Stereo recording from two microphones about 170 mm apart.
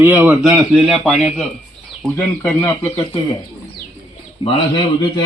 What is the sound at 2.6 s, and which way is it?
Speech, 20° left (ahead or behind).